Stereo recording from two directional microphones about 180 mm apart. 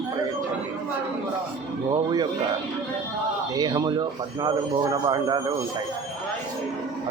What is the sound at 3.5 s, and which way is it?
Speech, 20° right (ahead or behind).